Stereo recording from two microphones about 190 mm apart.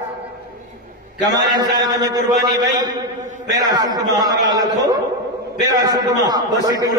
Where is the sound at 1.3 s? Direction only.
20° right (ahead or behind).